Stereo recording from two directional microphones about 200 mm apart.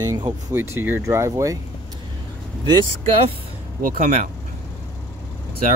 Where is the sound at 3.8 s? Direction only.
40° right (ahead or behind).